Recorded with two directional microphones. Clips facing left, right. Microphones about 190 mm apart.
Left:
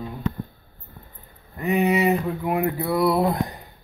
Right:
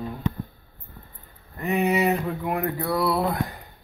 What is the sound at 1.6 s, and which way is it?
Speech, centre (ahead or behind).